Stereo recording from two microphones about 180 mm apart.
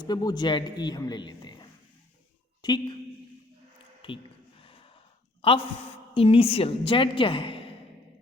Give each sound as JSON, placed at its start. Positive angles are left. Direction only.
{"t": 0.0, "sound": "a man's voice", "side_deg": 20}
{"t": 4.0, "sound": "a sound", "side_deg": 30}
{"t": 5.4, "sound": "a man's voice", "side_deg": 30}